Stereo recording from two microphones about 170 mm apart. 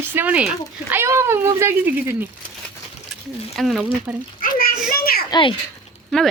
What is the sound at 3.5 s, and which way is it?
Speech, centre (ahead or behind).